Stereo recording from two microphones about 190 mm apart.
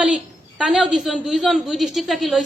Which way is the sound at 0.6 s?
5° right (ahead or behind).